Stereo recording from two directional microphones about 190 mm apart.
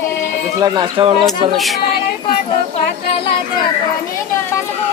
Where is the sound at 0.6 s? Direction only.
25° right (ahead or behind).